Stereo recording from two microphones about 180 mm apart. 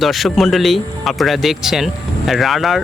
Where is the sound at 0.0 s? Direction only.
Centre (ahead or behind).